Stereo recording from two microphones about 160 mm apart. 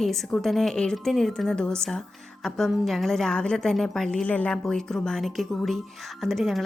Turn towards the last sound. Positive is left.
turn(degrees=0)  # may be behind; listen again after turning